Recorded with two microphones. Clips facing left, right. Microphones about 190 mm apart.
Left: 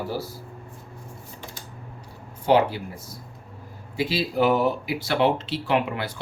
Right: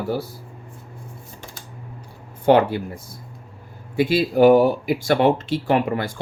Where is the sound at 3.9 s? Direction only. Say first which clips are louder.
Right 6 dB; 55° right (ahead or behind).